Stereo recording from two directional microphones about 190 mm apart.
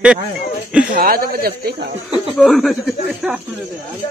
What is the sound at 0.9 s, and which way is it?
Speech, 50° right (ahead or behind).